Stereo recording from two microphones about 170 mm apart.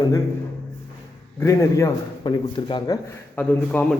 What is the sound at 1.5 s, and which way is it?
A man's voice, 20° left (ahead or behind).